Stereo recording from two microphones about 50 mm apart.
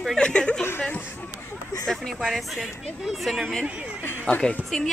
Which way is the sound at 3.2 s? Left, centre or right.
Centre.